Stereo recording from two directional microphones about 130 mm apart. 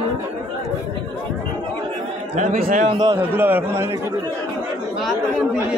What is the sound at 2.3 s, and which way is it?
Speech, 80° right.